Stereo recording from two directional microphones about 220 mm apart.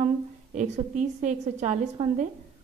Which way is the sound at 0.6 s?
35° right (ahead or behind).